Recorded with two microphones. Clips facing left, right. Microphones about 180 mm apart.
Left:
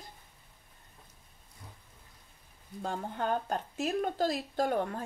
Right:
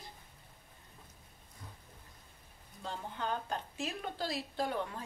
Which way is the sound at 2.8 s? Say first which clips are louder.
Left 6 dB; 50° left (ahead or behind).